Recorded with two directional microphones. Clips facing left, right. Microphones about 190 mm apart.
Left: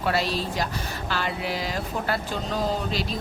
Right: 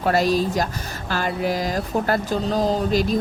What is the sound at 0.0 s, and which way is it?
Speech, 45° right (ahead or behind).